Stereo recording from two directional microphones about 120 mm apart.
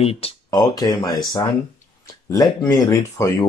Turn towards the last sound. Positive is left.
turn(degrees=25)  # may be behind; listen again after turning